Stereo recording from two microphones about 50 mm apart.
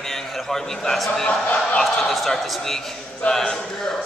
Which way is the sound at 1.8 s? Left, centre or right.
Centre.